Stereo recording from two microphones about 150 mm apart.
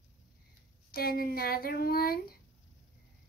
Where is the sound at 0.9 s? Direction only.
80° left.